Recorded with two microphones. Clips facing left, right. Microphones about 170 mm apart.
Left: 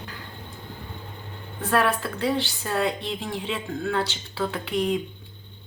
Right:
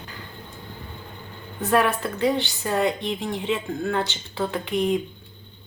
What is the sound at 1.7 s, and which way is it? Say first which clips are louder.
Speech: right 2 dB; centre (ahead or behind).